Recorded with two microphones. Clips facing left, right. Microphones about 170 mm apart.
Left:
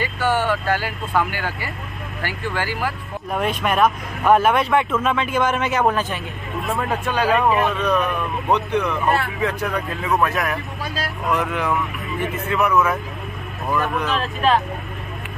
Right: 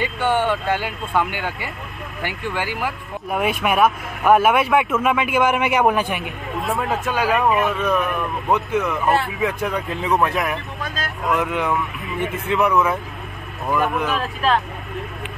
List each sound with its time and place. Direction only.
0.0 s speech: 20° right (ahead or behind)